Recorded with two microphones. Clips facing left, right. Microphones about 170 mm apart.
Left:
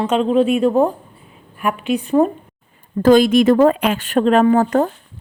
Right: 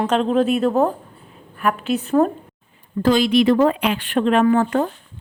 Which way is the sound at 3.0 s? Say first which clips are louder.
Left 4 dB; 45° left (ahead or behind).